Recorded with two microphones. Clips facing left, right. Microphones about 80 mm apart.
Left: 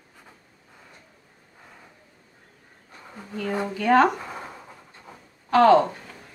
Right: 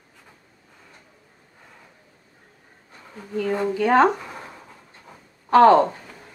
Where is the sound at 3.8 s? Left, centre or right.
Centre.